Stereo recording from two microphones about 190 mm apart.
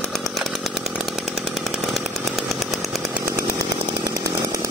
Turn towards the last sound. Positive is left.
turn(degrees=0)  # may be behind; listen again after turning